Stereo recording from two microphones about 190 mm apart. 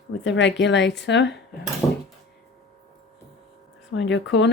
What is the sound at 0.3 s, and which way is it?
Speech, 70° left (ahead or behind).